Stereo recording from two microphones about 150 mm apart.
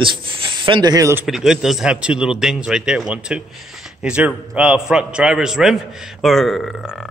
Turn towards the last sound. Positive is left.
turn(degrees=0)  # may be behind; listen again after turning